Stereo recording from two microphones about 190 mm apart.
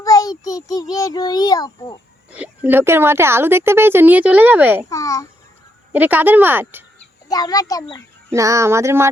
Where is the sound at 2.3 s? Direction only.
5° right (ahead or behind).